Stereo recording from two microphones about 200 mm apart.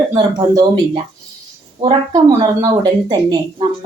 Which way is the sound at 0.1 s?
20° right (ahead or behind).